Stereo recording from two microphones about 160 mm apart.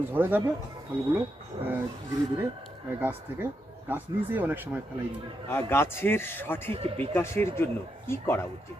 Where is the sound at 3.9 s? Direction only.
10° right (ahead or behind).